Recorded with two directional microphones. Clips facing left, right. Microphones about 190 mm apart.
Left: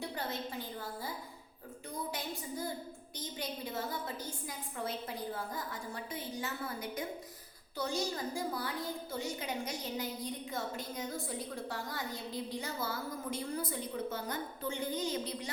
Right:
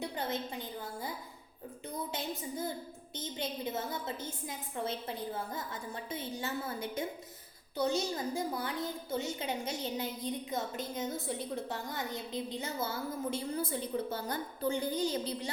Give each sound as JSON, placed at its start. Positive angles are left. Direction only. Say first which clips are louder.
{"t": 0.0, "sound": "a woman's voice", "louder": "right 3 dB", "side_deg": -20}
{"t": 3.2, "sound": "a woman's voice", "louder": "right 3 dB", "side_deg": -25}